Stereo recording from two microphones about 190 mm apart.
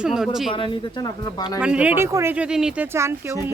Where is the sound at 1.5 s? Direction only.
5° right (ahead or behind).